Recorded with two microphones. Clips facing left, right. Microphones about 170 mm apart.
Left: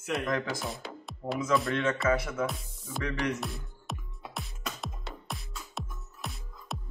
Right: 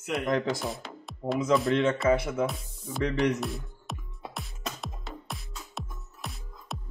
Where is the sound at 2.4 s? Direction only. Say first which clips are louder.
Right 3 dB; centre (ahead or behind).